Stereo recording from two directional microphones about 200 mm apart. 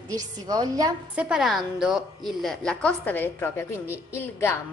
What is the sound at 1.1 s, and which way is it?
A woman's voice, 5° right (ahead or behind).